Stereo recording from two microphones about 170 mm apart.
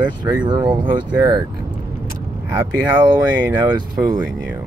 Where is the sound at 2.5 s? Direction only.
25° right (ahead or behind).